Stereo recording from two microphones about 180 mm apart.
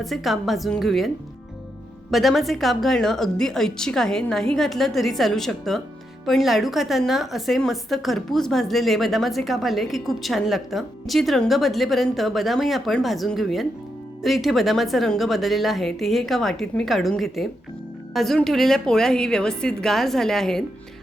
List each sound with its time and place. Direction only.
0.0 s a woman's voice: centre (ahead or behind)